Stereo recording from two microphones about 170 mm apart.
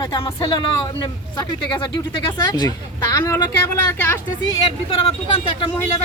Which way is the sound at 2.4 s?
25° left (ahead or behind).